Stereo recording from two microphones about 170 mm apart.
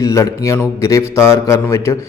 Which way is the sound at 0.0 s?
20° left (ahead or behind).